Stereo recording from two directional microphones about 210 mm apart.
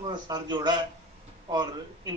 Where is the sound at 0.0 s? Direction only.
20° right (ahead or behind).